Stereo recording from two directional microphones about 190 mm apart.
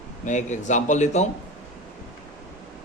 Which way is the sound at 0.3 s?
40° left (ahead or behind).